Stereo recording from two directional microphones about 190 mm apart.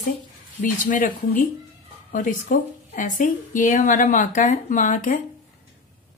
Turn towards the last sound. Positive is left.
turn(degrees=40)  # may be behind; listen again after turning